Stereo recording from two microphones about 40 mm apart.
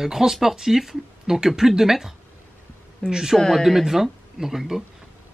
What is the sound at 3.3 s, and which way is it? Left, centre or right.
Speech, centre.